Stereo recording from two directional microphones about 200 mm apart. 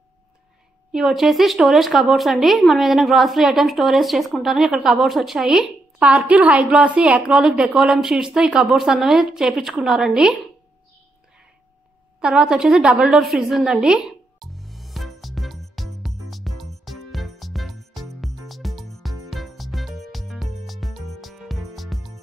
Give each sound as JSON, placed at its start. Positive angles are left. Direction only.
{"t": 0.9, "sound": "speech", "side_deg": 0}
{"t": 12.2, "sound": "a sound", "side_deg": -5}
{"t": 19.0, "sound": "music", "side_deg": 0}